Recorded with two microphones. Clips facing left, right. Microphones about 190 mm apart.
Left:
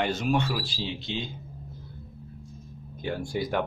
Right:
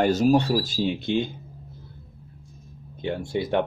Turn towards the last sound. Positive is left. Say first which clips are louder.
# right 4 dB
turn(degrees=-25)  # may be behind; listen again after turning